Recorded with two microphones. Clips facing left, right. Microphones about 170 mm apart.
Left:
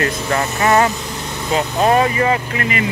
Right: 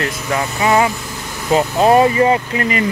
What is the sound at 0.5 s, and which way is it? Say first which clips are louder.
Speech: even; 10° right (ahead or behind).